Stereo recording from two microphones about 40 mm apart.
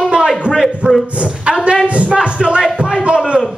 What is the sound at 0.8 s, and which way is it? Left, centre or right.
Speech, right.